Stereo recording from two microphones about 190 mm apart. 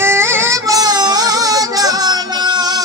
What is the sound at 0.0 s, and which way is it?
Music, 10° right (ahead or behind).